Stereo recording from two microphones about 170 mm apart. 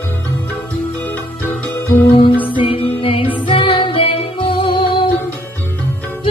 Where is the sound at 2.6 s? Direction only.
30° left (ahead or behind).